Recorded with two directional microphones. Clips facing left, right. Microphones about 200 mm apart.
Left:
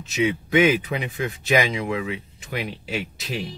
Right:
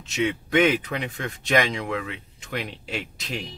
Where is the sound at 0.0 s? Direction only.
5° left (ahead or behind).